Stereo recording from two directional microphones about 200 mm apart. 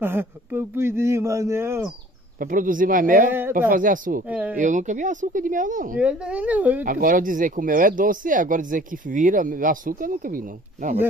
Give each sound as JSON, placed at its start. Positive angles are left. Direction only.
{"t": 0.0, "sound": "speech", "side_deg": -10}
{"t": 2.4, "sound": "speech", "side_deg": -40}
{"t": 3.3, "sound": "speech", "side_deg": -10}
{"t": 3.7, "sound": "speech", "side_deg": -40}
{"t": 4.3, "sound": "speech", "side_deg": -10}
{"t": 4.6, "sound": "speech", "side_deg": -40}
{"t": 5.9, "sound": "speech", "side_deg": -5}
{"t": 6.8, "sound": "speech", "side_deg": -45}